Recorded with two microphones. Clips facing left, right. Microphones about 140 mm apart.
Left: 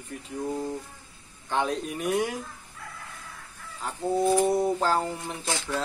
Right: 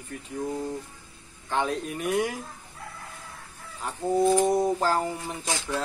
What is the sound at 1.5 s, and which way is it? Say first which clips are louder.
Speech: even; centre (ahead or behind).